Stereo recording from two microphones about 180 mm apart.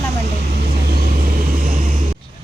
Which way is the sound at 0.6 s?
55° right (ahead or behind).